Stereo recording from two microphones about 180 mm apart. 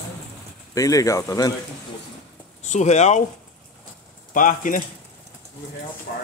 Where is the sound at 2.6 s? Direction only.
40° left (ahead or behind).